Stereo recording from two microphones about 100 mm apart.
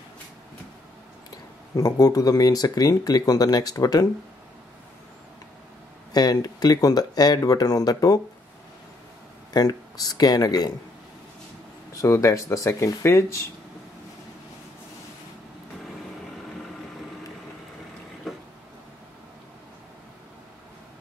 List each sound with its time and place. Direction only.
1.8 s speech: 35° left (ahead or behind)
6.1 s speech: 40° left (ahead or behind)
9.5 s speech: 40° left (ahead or behind)
11.9 s speech: 30° left (ahead or behind)